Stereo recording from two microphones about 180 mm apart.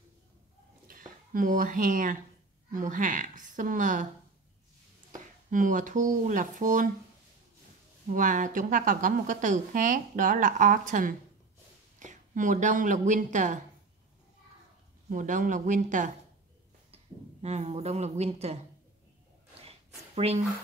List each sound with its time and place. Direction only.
0.8 s a woman's voice: 50° right (ahead or behind)
5.1 s speech: 45° right (ahead or behind)
8.1 s a woman's voice: 45° right (ahead or behind)
15.0 s a woman's voice: 45° right (ahead or behind)